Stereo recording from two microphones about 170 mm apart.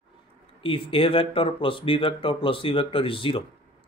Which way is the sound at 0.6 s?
30° left (ahead or behind).